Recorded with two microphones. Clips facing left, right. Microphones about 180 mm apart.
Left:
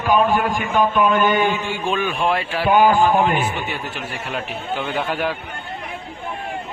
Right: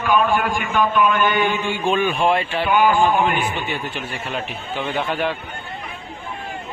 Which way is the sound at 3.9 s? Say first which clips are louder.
Even; 5° left (ahead or behind).